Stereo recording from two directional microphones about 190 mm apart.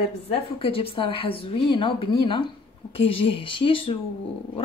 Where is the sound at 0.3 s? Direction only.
30° left (ahead or behind).